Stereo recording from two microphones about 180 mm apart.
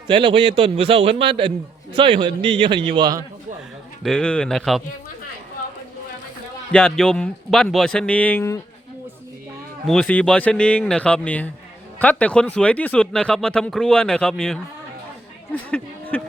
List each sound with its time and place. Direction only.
0.1 s a man's voice: 25° right (ahead or behind)
4.0 s speech: 5° left (ahead or behind)
6.7 s speech: 5° left (ahead or behind)
9.8 s speech: 5° left (ahead or behind)
15.7 s speech: 10° left (ahead or behind)